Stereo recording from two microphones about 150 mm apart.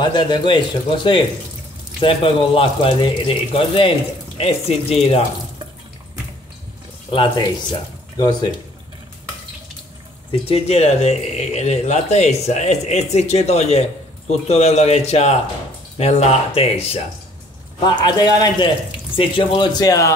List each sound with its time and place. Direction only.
0.0 s speech: 30° left (ahead or behind)
7.1 s speech: 35° left (ahead or behind)
10.5 s speech: 45° left (ahead or behind)
17.8 s speech: 30° left (ahead or behind)